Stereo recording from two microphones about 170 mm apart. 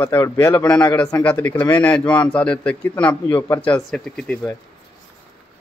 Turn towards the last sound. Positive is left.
turn(degrees=5)  # may be behind; listen again after turning